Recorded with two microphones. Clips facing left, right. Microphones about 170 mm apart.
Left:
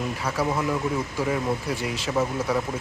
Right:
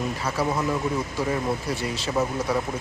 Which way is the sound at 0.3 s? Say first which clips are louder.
Even; 10° right (ahead or behind).